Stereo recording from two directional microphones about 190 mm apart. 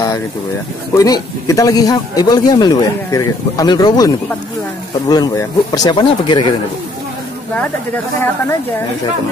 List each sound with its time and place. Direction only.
0.9 s speech: 20° left (ahead or behind)